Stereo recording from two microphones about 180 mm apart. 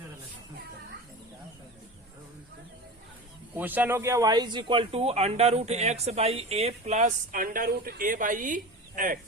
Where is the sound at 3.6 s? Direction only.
10° right (ahead or behind); by 9.2 s 50° right (ahead or behind).